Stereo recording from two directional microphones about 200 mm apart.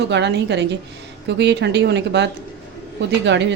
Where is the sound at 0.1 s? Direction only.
60° right (ahead or behind).